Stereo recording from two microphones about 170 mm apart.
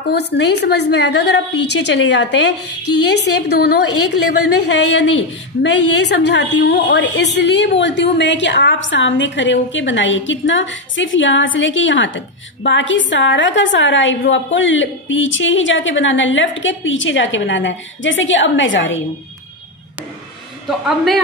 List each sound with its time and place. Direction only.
0.0 s a woman's voice: 80° left
3.4 s a woman's voice: 75° left (ahead or behind); by 19.0 s 90° left
20.6 s speech: centre (ahead or behind)